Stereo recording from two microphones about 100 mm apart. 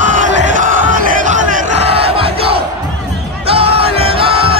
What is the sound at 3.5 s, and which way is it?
Music, 75° right (ahead or behind).